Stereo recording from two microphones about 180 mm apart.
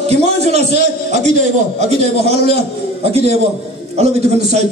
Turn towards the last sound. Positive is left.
turn(degrees=-35)  # may be behind; listen again after turning